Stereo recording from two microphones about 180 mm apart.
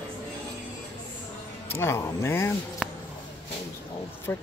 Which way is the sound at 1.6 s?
15° left (ahead or behind).